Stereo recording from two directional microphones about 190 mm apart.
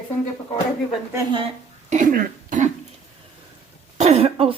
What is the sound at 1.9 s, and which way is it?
Speech, 45° right (ahead or behind).